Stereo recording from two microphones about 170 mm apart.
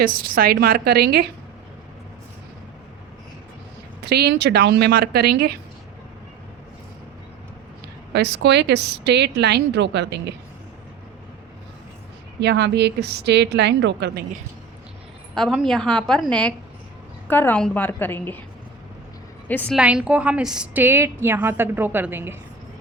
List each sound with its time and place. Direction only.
0.0 s a woman's voice: 60° right (ahead or behind)
4.0 s speech: 70° right (ahead or behind)
8.1 s speech: 85° right
12.4 s speech: 80° right
15.4 s a woman's voice: centre (ahead or behind)
19.5 s a woman's voice: 10° left (ahead or behind)
19.7 s a woman's voice: 5° right (ahead or behind)